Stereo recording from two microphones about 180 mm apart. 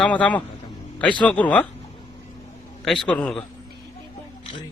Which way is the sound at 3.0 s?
5° left (ahead or behind).